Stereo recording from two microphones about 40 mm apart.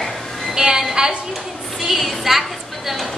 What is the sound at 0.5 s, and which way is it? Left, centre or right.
Speech, centre.